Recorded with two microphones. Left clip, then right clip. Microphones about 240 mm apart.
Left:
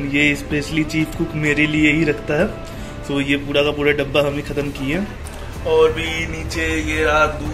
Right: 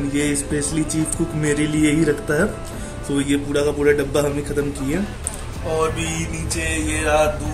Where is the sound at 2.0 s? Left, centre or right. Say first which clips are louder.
Even; centre.